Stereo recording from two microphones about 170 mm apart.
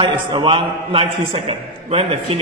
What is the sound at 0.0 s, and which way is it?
A man's voice, 30° right (ahead or behind).